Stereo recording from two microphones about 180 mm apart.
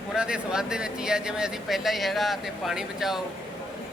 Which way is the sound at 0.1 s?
5° right (ahead or behind).